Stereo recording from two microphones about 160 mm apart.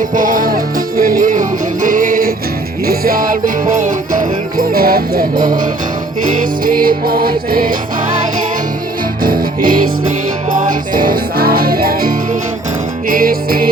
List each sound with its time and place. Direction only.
0.1 s music: 55° right (ahead or behind); by 5.2 s 75° right (ahead or behind)
6.3 s music: 55° right (ahead or behind)
9.2 s music: 60° right (ahead or behind)